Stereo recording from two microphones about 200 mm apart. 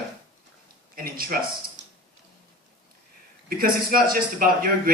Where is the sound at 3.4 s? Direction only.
45° right (ahead or behind).